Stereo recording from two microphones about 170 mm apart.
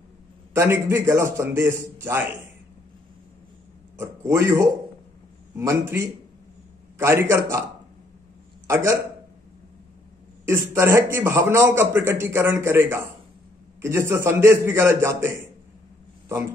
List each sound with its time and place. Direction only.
0.6 s a man's voice: 15° right (ahead or behind)
4.0 s a man's voice: 15° right (ahead or behind)
8.6 s a man's voice: 15° right (ahead or behind)
10.4 s a man's voice: 15° right (ahead or behind)